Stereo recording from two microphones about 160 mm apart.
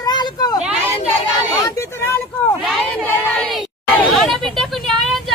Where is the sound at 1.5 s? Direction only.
20° left (ahead or behind).